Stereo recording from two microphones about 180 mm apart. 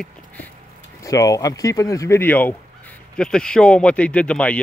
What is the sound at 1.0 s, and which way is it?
Speech, 20° left (ahead or behind).